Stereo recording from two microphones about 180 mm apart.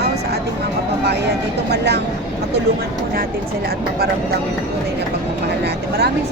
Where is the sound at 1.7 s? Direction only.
65° right (ahead or behind).